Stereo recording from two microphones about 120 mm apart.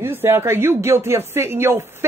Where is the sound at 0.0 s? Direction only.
20° right (ahead or behind).